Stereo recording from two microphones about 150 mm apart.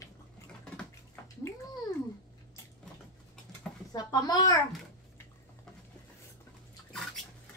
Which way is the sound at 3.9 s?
25° left (ahead or behind).